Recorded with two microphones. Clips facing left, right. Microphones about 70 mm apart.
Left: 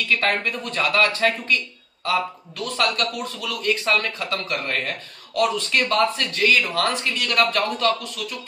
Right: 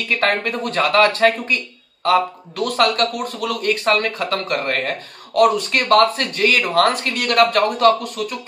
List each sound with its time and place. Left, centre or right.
0.2 s speech: right